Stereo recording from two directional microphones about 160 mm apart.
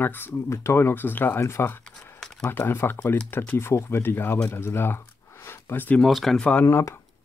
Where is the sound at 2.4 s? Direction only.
15° left (ahead or behind).